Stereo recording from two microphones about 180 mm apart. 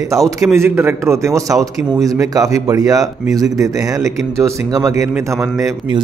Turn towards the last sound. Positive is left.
turn(degrees=-20)  # may be behind; listen again after turning